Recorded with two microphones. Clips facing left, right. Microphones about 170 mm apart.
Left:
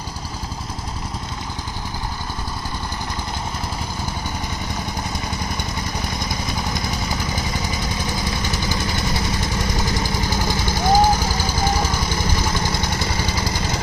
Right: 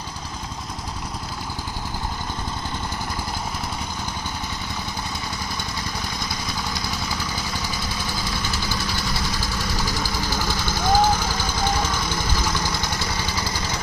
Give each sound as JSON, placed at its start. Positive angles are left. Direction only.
{"t": 9.6, "sound": "vehicle", "side_deg": 20}